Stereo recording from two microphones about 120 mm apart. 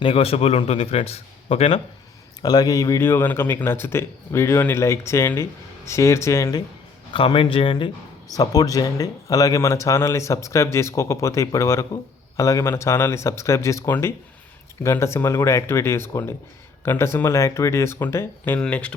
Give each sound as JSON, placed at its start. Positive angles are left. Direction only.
{"t": 0.0, "sound": "a man's voice", "side_deg": 50}
{"t": 2.4, "sound": "speech", "side_deg": 35}
{"t": 7.1, "sound": "speech", "side_deg": 45}
{"t": 8.3, "sound": "speech", "side_deg": 30}